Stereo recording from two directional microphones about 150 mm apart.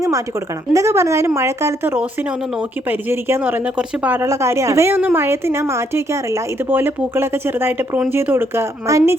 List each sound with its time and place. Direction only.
0.7 s speech: 20° right (ahead or behind)
3.1 s speech: 15° right (ahead or behind)